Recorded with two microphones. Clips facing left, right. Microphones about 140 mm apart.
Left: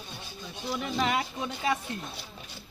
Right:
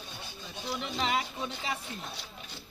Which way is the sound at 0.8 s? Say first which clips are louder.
Left 4 dB; 50° left (ahead or behind).